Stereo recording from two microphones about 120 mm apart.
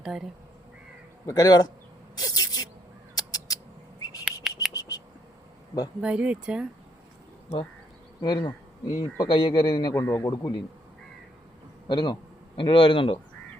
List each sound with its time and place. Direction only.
0.0 s speech: 5° right (ahead or behind)
1.3 s speech: 35° left (ahead or behind)
2.1 s spray: 35° left (ahead or behind)
3.2 s crow: 30° left (ahead or behind)
4.0 s a sound: 30° left (ahead or behind)
6.0 s speech: 10° right (ahead or behind)
8.2 s speech: 35° left (ahead or behind)
9.9 s speech: 30° left (ahead or behind)
11.9 s a man's voice: 40° left (ahead or behind)